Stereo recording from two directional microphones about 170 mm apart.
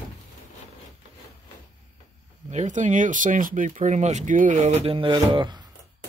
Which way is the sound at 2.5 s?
45° right (ahead or behind).